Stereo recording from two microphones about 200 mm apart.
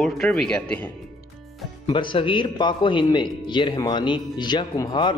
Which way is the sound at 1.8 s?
25° left (ahead or behind).